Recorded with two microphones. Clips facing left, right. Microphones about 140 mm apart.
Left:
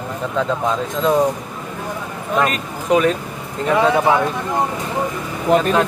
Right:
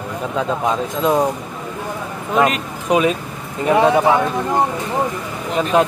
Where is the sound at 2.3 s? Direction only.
15° right (ahead or behind).